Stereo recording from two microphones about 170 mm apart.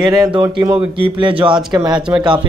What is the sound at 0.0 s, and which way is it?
Speech, 20° right (ahead or behind).